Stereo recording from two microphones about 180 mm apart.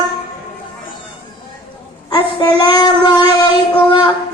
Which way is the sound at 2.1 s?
25° left (ahead or behind).